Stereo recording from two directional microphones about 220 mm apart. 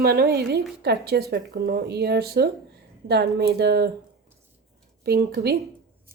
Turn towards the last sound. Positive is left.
turn(degrees=-45)  # may be behind; listen again after turning